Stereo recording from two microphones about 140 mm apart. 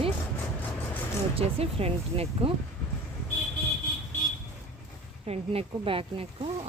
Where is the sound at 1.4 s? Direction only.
45° right (ahead or behind).